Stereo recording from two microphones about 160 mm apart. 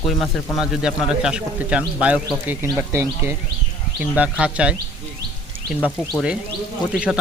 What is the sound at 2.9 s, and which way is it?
Speech, 20° right (ahead or behind).